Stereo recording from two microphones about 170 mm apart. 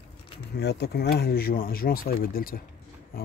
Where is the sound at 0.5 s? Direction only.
75° left (ahead or behind).